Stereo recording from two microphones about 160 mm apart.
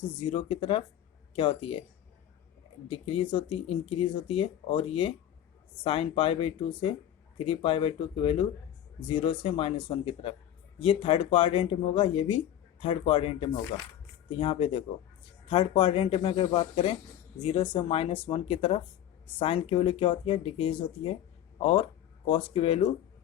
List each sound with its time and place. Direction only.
0.2 s speech: 35° left (ahead or behind)
2.9 s speech: 35° left (ahead or behind)